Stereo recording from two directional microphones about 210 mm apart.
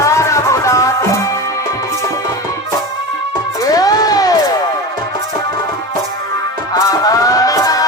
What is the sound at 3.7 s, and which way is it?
Music, 15° left (ahead or behind).